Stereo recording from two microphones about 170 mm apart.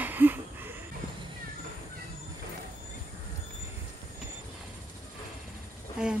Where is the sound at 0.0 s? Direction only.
10° right (ahead or behind).